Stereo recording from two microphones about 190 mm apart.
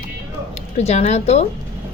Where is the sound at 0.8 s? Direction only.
35° left (ahead or behind).